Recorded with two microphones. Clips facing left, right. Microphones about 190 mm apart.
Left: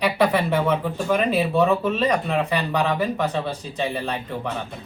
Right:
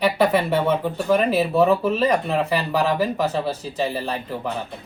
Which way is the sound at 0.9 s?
5° right (ahead or behind).